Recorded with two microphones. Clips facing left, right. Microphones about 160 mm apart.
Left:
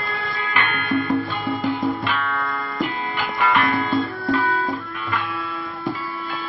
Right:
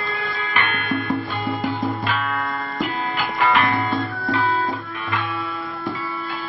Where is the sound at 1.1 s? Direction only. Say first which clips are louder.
Left 1 dB; centre (ahead or behind).